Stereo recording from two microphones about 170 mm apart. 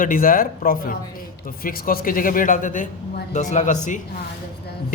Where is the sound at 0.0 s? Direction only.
55° left (ahead or behind).